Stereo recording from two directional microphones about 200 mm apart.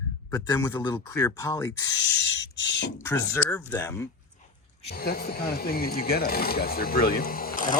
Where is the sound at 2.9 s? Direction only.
15° left (ahead or behind).